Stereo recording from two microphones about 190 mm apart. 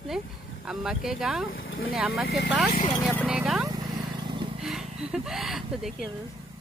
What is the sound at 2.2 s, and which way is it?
Speech, 55° left (ahead or behind).